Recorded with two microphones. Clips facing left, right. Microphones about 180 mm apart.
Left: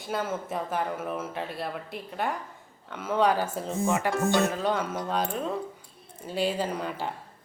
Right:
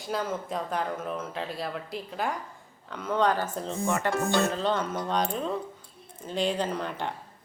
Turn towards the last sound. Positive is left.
turn(degrees=5)  # may be behind; listen again after turning